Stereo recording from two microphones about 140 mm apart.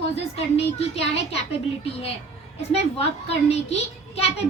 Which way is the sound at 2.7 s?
45° left (ahead or behind).